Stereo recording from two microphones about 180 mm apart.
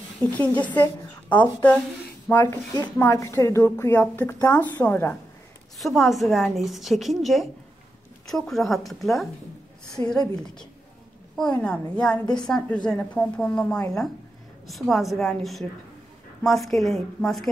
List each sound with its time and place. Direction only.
0.2 s a woman's voice: 10° left (ahead or behind)
5.8 s a woman's voice: centre (ahead or behind)